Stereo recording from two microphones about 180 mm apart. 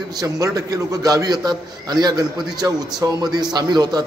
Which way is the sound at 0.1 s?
20° right (ahead or behind).